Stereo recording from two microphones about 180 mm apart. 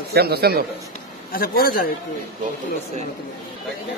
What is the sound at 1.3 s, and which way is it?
Speech, 55° left (ahead or behind).